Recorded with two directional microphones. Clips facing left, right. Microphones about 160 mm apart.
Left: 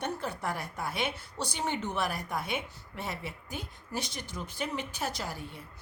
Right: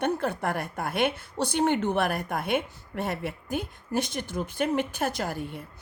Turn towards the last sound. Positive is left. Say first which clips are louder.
# right 7 dB
turn(degrees=-55)  # may be behind; listen again after turning